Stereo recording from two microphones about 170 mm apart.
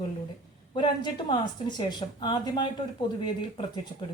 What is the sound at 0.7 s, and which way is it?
A woman's voice, 25° left (ahead or behind).